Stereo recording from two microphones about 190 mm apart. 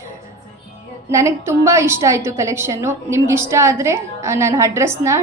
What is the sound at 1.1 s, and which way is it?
A woman's voice, 15° right (ahead or behind).